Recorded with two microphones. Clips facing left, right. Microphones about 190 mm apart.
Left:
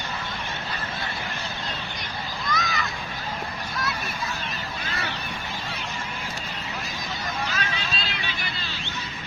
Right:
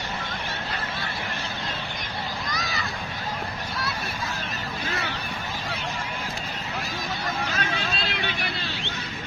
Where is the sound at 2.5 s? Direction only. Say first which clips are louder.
Left 3 dB; 35° right (ahead or behind).